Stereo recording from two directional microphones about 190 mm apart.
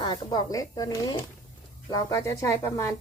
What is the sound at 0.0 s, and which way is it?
A woman's voice, 20° left (ahead or behind).